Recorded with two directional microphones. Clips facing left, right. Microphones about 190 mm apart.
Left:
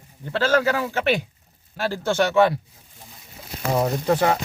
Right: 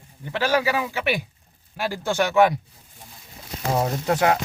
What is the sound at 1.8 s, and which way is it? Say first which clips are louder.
Speech: left 2 dB; 15° right (ahead or behind).